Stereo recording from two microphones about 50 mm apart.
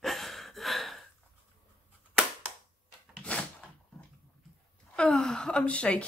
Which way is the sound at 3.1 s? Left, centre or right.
Left.